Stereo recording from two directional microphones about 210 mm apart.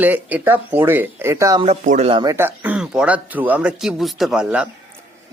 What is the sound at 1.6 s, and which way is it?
Speech, 30° right (ahead or behind).